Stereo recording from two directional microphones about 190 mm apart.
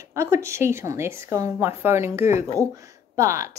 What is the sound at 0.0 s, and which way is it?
A woman's voice, 15° right (ahead or behind).